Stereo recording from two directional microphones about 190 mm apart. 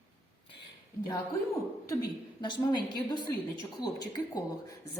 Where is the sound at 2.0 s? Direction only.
25° left (ahead or behind).